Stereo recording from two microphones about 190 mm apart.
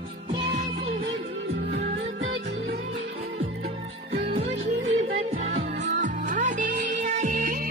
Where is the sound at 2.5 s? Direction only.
70° right (ahead or behind).